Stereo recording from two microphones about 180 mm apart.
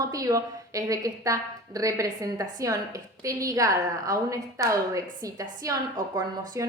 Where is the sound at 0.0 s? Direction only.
20° right (ahead or behind).